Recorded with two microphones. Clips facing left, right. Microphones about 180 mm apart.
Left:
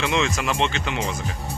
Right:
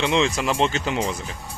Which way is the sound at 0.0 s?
30° right (ahead or behind).